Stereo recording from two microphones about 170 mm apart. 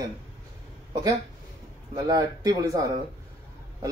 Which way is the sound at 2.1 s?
20° right (ahead or behind).